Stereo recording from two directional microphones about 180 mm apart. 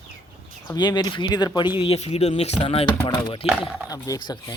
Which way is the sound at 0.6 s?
25° left (ahead or behind).